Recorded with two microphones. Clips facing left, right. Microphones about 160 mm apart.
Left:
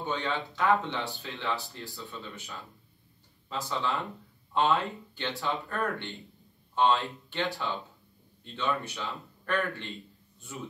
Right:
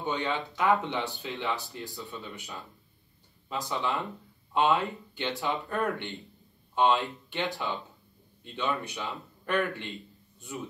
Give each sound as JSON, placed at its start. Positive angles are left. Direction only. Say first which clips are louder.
{"t": 0.0, "sound": "speech", "louder": "right 1 dB", "side_deg": -20}